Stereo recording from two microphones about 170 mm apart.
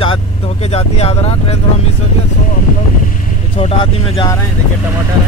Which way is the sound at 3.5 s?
30° left (ahead or behind).